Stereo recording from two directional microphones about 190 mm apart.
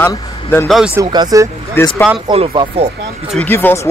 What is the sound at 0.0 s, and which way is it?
Speech, 10° left (ahead or behind).